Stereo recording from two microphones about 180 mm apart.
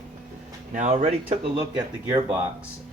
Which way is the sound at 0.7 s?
40° right (ahead or behind).